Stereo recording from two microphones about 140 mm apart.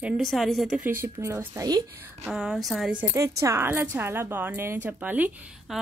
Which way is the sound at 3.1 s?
20° right (ahead or behind).